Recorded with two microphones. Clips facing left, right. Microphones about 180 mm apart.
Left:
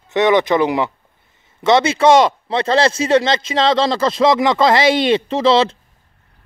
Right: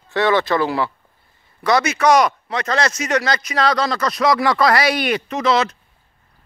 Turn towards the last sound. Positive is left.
turn(degrees=30)  # may be behind; listen again after turning